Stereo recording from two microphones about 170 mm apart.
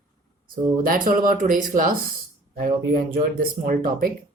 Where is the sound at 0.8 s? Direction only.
55° right (ahead or behind).